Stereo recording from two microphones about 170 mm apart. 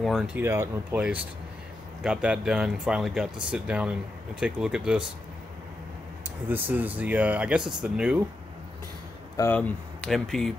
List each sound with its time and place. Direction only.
0.0 s speech: centre (ahead or behind)
0.4 s speech: 15° right (ahead or behind)
2.0 s speech: 5° right (ahead or behind)
6.5 s speech: 10° right (ahead or behind)
9.4 s speech: 10° left (ahead or behind)